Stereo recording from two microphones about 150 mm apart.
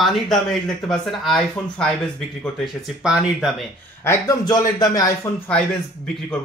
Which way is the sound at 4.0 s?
20° left (ahead or behind).